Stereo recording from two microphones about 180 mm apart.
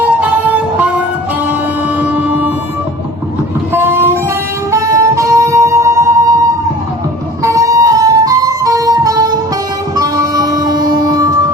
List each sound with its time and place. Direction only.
0.2 s music: 5° right (ahead or behind)
3.7 s train: 10° right (ahead or behind)
4.7 s music: 15° right (ahead or behind)